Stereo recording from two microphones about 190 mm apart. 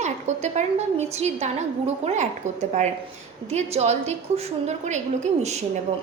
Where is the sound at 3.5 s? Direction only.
35° right (ahead or behind).